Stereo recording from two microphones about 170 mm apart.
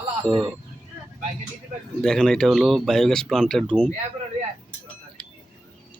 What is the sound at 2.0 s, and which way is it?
Speech, 5° left (ahead or behind).